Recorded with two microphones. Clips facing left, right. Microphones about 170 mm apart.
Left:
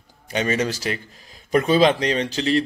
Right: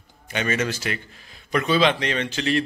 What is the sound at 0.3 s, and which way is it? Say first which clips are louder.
A man's voice: left 2 dB; 35° left (ahead or behind).